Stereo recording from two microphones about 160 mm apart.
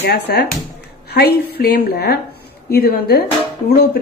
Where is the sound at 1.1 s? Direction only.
80° left.